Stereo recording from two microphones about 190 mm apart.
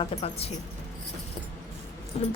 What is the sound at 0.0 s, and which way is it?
Speech, 30° left (ahead or behind).